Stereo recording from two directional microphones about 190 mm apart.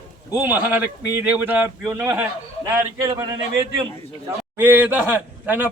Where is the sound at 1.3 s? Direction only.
10° right (ahead or behind).